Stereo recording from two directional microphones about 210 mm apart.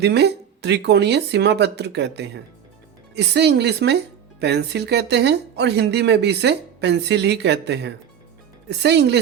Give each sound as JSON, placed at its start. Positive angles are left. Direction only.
{"t": 0.0, "sound": "a woman's voice", "side_deg": -50}